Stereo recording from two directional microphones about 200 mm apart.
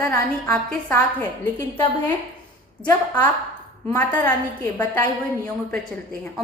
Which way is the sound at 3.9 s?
10° left (ahead or behind).